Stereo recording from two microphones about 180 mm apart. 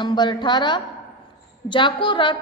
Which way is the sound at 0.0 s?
25° left (ahead or behind).